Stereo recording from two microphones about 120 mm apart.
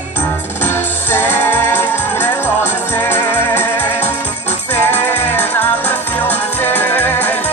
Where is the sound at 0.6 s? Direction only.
15° left (ahead or behind).